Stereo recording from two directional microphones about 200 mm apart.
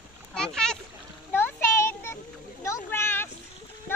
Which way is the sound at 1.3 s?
10° left (ahead or behind).